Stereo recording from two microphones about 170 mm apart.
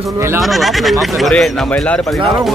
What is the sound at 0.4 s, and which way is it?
Speech, centre (ahead or behind).